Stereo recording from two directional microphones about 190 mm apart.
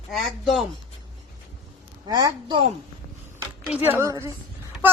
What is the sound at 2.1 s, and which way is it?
Speech, 20° right (ahead or behind).